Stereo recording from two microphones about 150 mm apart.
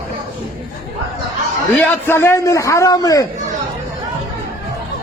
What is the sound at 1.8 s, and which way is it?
A man's voice, 15° left (ahead or behind).